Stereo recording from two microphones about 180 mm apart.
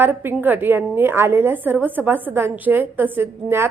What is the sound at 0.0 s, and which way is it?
A woman's voice, 10° right (ahead or behind).